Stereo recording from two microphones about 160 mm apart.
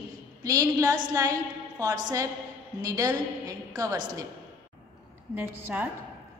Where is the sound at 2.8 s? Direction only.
20° right (ahead or behind).